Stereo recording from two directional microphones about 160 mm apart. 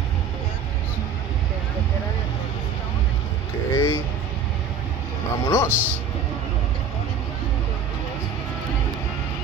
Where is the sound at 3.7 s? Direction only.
15° left (ahead or behind).